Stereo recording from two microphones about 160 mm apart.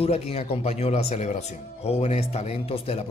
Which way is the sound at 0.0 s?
40° left (ahead or behind).